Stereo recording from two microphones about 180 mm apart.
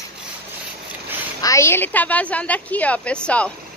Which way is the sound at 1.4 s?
15° left (ahead or behind).